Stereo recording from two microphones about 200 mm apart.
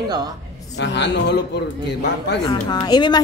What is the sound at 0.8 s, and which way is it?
Speech, 60° left (ahead or behind).